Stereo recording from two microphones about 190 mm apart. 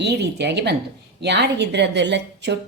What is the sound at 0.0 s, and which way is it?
A woman's voice, 65° right (ahead or behind).